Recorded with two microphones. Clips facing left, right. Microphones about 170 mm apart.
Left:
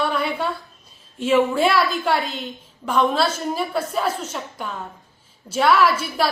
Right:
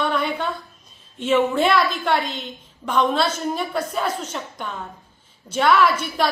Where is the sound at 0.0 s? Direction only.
10° left (ahead or behind).